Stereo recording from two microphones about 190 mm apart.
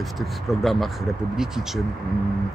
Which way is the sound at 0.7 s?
Centre (ahead or behind).